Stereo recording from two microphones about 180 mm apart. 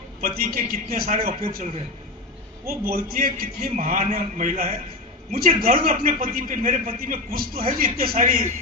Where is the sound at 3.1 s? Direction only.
55° right (ahead or behind).